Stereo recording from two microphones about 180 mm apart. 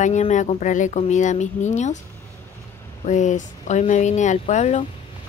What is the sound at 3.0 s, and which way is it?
Speech, 40° left (ahead or behind).